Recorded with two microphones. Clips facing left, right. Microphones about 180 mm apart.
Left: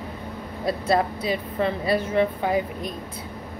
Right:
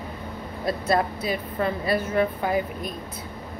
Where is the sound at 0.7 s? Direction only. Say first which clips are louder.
Left 1 dB; 30° left (ahead or behind).